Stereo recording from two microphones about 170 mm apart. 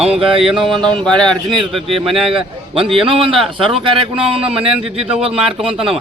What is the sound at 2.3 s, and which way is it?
A man's voice, 35° right (ahead or behind).